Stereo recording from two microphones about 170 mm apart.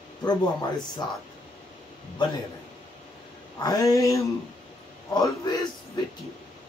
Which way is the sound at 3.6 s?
20° left (ahead or behind).